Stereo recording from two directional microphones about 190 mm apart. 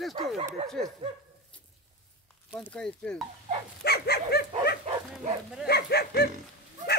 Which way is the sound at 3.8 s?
55° left (ahead or behind).